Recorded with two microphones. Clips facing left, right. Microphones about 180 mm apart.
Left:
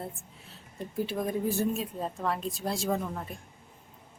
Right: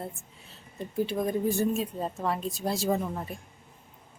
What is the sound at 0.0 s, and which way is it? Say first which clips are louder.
Speech: right 1 dB; centre (ahead or behind).